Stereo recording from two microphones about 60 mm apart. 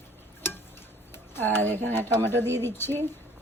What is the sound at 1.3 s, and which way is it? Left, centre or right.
Speech, left.